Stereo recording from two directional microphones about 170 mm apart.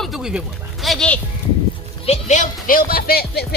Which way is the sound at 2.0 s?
40° left (ahead or behind).